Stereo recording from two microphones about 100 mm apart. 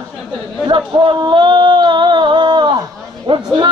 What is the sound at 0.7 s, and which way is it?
Music, 55° right (ahead or behind).